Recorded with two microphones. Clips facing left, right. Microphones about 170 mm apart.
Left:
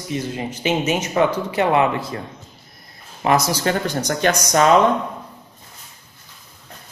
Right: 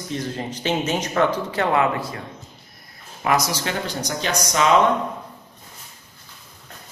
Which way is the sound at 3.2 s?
30° left (ahead or behind).